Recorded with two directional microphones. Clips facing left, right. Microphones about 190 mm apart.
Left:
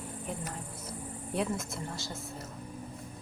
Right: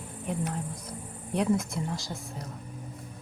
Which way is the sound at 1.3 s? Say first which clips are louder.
Right 6 dB; centre (ahead or behind).